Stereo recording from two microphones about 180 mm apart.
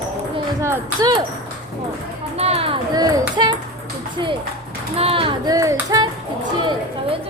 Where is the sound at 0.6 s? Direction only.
20° right (ahead or behind).